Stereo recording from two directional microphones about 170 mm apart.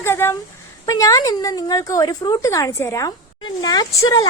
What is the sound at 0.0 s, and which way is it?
Speech, 15° left (ahead or behind).